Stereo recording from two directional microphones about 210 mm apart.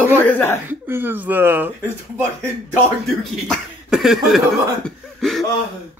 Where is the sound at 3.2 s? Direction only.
Centre (ahead or behind).